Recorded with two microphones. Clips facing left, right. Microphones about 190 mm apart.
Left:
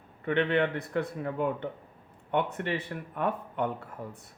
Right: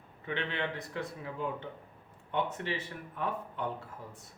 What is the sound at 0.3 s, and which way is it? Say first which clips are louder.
Speech: left 9 dB; 60° left (ahead or behind).